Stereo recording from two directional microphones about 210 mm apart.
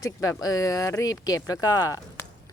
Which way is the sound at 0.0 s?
15° left (ahead or behind).